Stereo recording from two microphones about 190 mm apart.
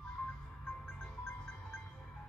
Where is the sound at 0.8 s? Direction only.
5° left (ahead or behind).